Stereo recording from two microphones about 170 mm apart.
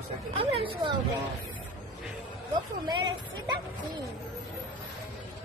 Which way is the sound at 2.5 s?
30° right (ahead or behind).